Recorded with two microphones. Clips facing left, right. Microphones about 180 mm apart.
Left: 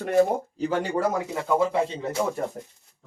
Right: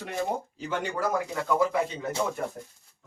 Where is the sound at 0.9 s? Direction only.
25° left (ahead or behind).